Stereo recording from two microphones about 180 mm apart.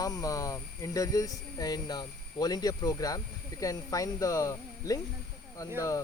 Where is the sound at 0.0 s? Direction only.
20° left (ahead or behind).